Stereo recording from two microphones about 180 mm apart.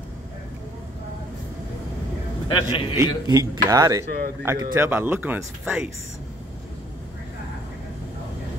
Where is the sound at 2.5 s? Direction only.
30° left (ahead or behind).